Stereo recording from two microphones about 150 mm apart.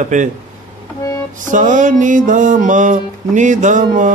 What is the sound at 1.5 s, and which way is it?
Mantra, 55° right (ahead or behind).